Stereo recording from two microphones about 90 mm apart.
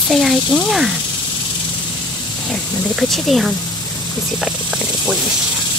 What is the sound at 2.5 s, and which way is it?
Speech, centre (ahead or behind).